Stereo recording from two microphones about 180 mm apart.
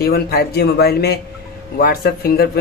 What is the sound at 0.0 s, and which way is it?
Speech, 60° left (ahead or behind).